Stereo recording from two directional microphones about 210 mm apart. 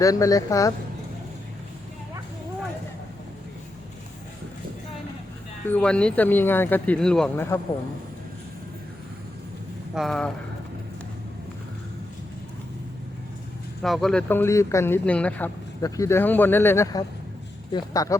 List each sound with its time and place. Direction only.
0.0 s speech: 15° left (ahead or behind)
5.6 s speech: 5° left (ahead or behind)
9.9 s speech: centre (ahead or behind)
13.8 s speech: centre (ahead or behind); by 18.2 s 15° left (ahead or behind)